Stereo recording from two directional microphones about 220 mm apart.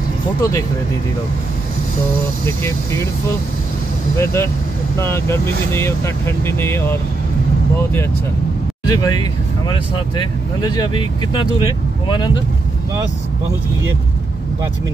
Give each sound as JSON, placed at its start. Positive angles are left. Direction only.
{"t": 0.4, "sound": "speech", "side_deg": 15}
{"t": 2.4, "sound": "speech", "side_deg": 10}
{"t": 4.2, "sound": "speech", "side_deg": 10}
{"t": 9.0, "sound": "speech", "side_deg": 20}